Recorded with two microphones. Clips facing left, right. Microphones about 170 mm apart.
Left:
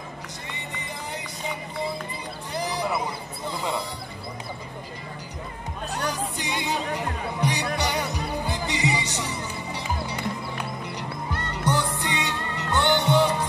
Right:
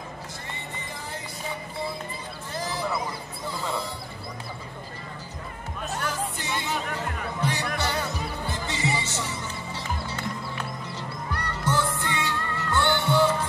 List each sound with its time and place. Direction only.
2.5 s a sound: 15° left (ahead or behind)
3.4 s music: 20° left (ahead or behind)
5.9 s music: 15° left (ahead or behind)